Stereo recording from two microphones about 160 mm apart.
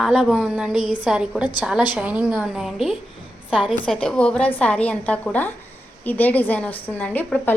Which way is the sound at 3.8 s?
5° left (ahead or behind).